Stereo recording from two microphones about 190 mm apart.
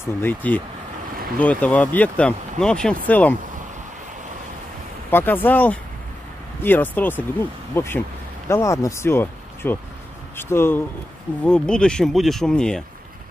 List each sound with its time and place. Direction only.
0.0 s speech: 10° left (ahead or behind)
5.1 s speech: 10° left (ahead or behind)